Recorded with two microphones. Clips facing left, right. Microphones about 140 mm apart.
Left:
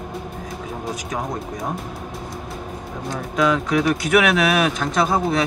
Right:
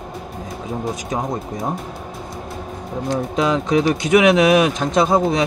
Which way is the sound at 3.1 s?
25° right (ahead or behind).